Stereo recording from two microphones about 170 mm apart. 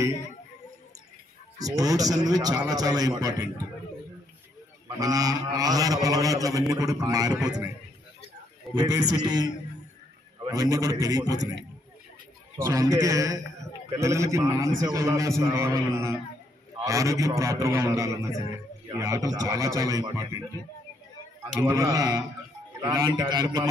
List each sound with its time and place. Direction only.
1.6 s a man's voice: 20° right (ahead or behind)
4.9 s a man's voice: 20° right (ahead or behind)
8.7 s a man's voice: 20° right (ahead or behind)
12.5 s a man's voice: 15° right (ahead or behind)
21.5 s a man's voice: 20° right (ahead or behind)